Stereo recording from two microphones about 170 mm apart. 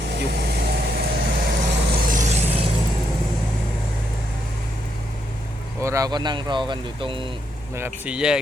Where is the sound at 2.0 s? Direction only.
50° right (ahead or behind).